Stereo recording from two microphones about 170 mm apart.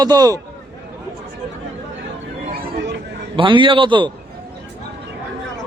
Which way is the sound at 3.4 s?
30° right (ahead or behind).